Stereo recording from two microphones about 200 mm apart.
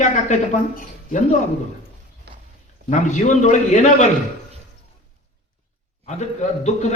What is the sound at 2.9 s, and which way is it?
A man's voice, 35° left (ahead or behind).